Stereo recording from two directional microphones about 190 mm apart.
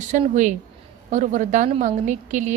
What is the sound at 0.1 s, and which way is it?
A woman's voice, 40° right (ahead or behind).